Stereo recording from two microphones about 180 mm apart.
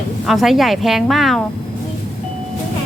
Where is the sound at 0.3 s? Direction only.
Centre (ahead or behind).